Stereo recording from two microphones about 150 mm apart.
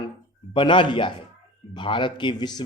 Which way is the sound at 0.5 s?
35° left (ahead or behind).